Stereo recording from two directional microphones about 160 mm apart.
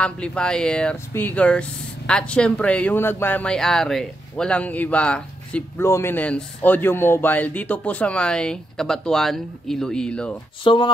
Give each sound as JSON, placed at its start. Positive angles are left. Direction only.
{"t": 0.0, "sound": "speech", "side_deg": 5}
{"t": 10.6, "sound": "speech", "side_deg": 30}